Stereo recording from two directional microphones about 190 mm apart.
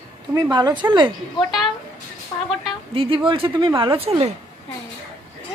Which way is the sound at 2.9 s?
30° right (ahead or behind).